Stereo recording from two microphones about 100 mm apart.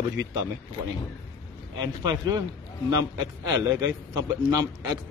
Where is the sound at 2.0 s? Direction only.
40° right (ahead or behind).